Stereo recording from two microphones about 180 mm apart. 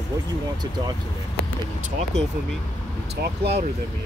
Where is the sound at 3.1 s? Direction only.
70° right (ahead or behind).